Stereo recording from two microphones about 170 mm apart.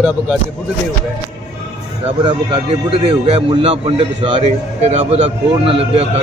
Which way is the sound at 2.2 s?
30° right (ahead or behind).